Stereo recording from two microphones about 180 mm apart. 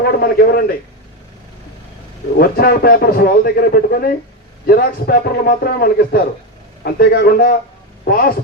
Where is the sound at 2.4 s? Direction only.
60° left (ahead or behind).